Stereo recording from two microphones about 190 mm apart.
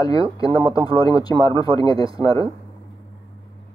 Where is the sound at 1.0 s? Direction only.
20° left (ahead or behind).